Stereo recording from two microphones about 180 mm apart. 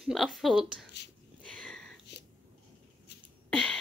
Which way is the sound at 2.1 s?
70° left (ahead or behind).